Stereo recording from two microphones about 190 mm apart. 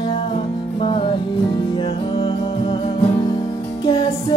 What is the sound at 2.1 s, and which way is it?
Music, 25° left (ahead or behind).